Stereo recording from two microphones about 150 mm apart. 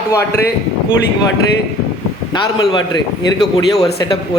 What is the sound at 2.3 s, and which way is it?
Speech, 30° left (ahead or behind).